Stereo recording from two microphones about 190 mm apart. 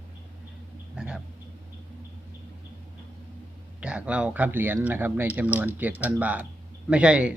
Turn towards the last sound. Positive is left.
turn(degrees=-5)  # may be behind; listen again after turning